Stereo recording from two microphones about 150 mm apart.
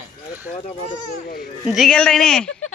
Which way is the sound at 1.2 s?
85° left.